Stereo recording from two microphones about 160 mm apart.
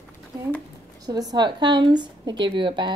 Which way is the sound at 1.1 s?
25° right (ahead or behind).